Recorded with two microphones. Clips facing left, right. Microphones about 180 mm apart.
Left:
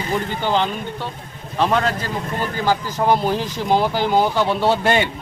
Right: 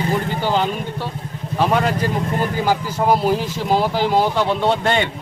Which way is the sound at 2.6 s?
5° right (ahead or behind).